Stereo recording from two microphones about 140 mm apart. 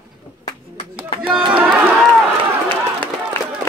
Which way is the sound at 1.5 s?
10° right (ahead or behind).